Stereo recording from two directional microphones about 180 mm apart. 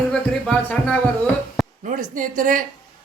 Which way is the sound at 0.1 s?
5° left (ahead or behind).